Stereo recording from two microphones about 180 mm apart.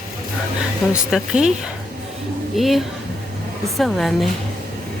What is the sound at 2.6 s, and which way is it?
Speech, centre (ahead or behind).